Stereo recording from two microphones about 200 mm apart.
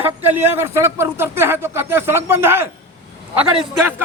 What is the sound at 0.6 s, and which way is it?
Speech, 15° right (ahead or behind).